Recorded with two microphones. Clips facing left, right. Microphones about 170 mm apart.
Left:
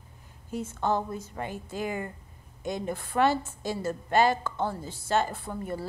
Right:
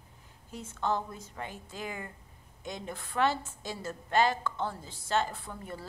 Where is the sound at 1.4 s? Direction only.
5° left (ahead or behind).